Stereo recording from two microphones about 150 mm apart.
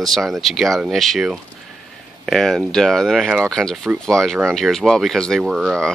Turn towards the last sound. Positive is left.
turn(degrees=0)  # may be behind; listen again after turning